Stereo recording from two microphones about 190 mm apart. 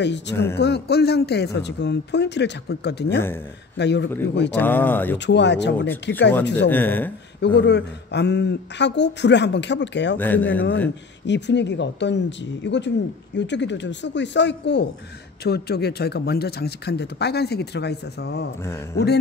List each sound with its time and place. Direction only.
0.0 s speech: 65° left (ahead or behind)
4.6 s speech: 10° left (ahead or behind)
5.2 s speech: 65° left (ahead or behind)
6.7 s speech: 10° left (ahead or behind)
7.4 s speech: 60° left (ahead or behind)
10.1 s speech: 10° left (ahead or behind)
11.2 s speech: 65° left (ahead or behind)